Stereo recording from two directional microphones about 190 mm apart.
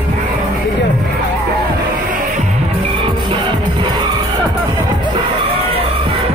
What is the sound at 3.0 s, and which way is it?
Music, 25° right (ahead or behind).